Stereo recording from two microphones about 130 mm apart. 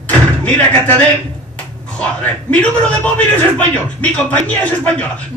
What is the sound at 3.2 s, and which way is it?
Speech, 10° left (ahead or behind).